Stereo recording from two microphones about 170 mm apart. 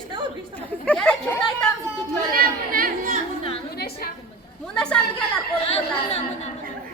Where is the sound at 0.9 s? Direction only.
5° left (ahead or behind).